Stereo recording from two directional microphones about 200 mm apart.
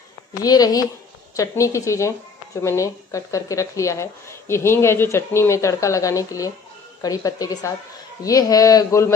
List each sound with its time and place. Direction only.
0.4 s speech: 20° left (ahead or behind)